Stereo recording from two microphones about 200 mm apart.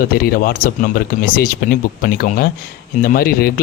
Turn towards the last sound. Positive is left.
turn(degrees=50)  # may be behind; listen again after turning